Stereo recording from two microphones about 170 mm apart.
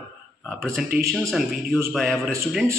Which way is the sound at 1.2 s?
Centre (ahead or behind).